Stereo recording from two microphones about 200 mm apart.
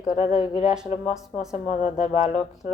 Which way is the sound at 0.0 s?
40° left (ahead or behind).